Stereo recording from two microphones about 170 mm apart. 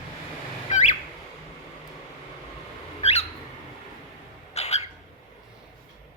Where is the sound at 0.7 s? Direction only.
45° left (ahead or behind).